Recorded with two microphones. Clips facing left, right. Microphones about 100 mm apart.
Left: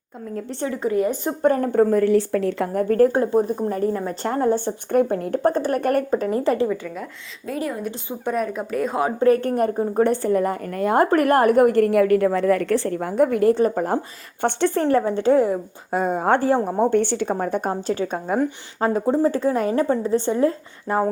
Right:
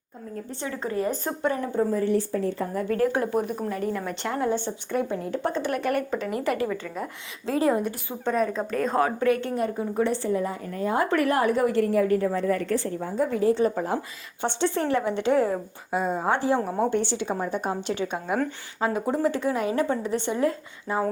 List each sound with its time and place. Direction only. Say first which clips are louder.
1.0 s a woman's voice: left 5 dB; 15° left (ahead or behind)
1.4 s a woman's voice: left 9 dB; 45° left (ahead or behind); by 2.6 s 90° left
2.7 s speech: left 8 dB; 45° left (ahead or behind)
6.7 s a woman's voice: left 4 dB; centre (ahead or behind)
7.4 s a woman's voice: right 4 dB; 30° right (ahead or behind)
7.9 s a woman's voice: left 2 dB; 10° left (ahead or behind)
9.2 s speech: left 6 dB; 35° left (ahead or behind)
9.5 s a woman's voice: left 6 dB; 50° left (ahead or behind)
11.0 s a woman's voice: left 6 dB; 50° left (ahead or behind)
13.6 s a woman's voice: left 4 dB; 50° left (ahead or behind)
15.9 s a woman's voice: left 5 dB; 50° left (ahead or behind); by 20.6 s 35° left (ahead or behind)
20.9 s a woman's voice: left 5 dB; 55° left (ahead or behind)